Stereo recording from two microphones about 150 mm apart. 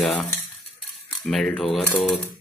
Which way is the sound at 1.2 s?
5° left (ahead or behind).